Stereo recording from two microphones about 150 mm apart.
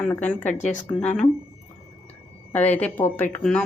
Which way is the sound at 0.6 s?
55° left (ahead or behind).